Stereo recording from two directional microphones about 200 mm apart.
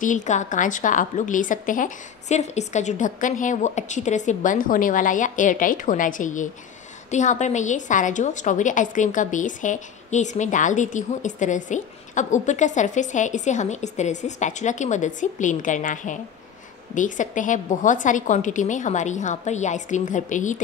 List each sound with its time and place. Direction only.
0.0 s a woman's voice: 40° left (ahead or behind)